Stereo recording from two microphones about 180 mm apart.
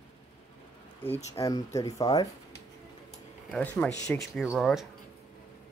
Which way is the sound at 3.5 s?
10° left (ahead or behind).